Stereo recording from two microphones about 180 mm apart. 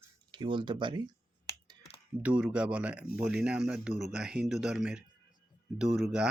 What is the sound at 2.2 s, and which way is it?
Speech, 5° right (ahead or behind).